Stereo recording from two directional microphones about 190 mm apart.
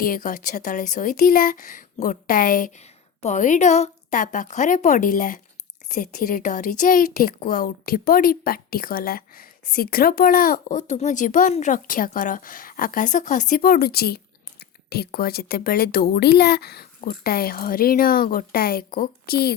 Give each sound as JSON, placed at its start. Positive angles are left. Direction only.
{"t": 0.0, "sound": "speech", "side_deg": 50}